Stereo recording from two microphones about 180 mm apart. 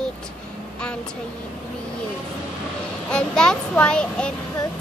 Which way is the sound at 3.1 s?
5° left (ahead or behind).